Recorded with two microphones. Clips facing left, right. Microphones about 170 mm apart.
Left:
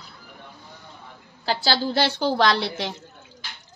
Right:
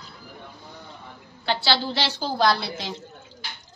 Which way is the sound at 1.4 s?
40° left (ahead or behind).